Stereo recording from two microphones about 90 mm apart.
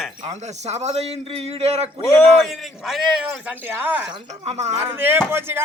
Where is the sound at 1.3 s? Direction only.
90° right.